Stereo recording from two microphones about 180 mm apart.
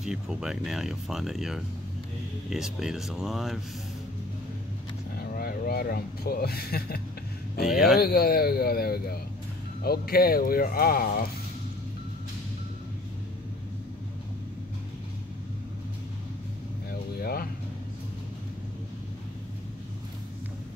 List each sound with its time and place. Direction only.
0.0 s speech: 5° right (ahead or behind)
5.1 s speech: 60° left (ahead or behind)
7.6 s speech: centre (ahead or behind)
8.0 s speech: 55° left (ahead or behind)
17.2 s vehicle: 55° left (ahead or behind)